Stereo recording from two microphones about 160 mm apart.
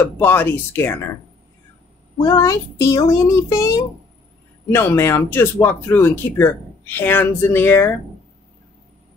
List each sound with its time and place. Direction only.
0.0 s speech: 10° left (ahead or behind)
2.2 s a child's voice: 20° left (ahead or behind)